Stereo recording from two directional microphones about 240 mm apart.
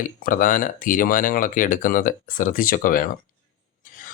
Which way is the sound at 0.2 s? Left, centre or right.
Left.